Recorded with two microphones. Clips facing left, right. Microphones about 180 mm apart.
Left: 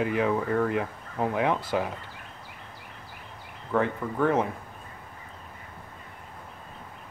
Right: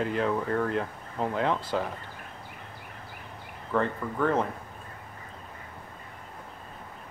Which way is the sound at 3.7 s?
10° left (ahead or behind).